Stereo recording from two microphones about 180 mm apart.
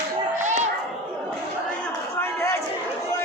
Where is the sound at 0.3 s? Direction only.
40° right (ahead or behind).